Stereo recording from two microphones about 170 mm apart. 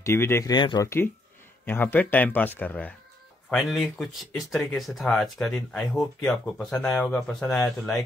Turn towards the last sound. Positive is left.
turn(degrees=5)  # may be behind; listen again after turning